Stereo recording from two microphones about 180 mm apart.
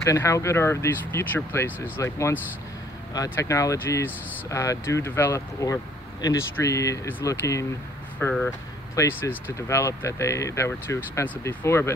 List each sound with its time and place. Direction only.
0.0 s speech: 15° left (ahead or behind)